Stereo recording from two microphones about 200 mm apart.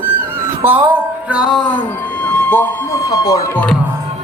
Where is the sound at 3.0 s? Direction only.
20° left (ahead or behind).